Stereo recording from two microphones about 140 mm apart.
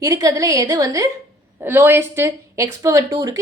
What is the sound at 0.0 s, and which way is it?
A woman's voice, 25° right (ahead or behind).